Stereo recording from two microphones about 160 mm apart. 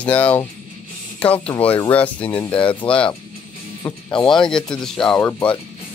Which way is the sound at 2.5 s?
35° left (ahead or behind).